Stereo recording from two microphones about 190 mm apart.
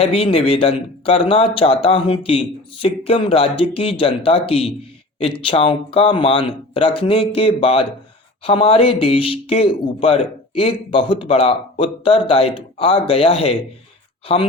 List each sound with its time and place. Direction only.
0.0 s speech: 30° left (ahead or behind)